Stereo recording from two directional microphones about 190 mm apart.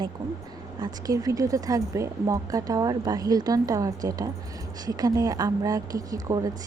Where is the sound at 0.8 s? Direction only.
20° right (ahead or behind).